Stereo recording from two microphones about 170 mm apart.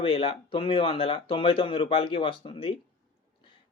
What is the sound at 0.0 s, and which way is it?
Speech, 35° left (ahead or behind).